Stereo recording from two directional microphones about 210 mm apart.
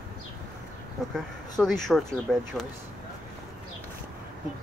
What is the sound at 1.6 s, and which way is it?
Speech, centre (ahead or behind).